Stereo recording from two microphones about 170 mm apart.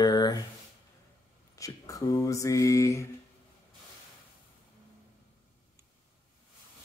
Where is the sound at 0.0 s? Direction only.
25° left (ahead or behind).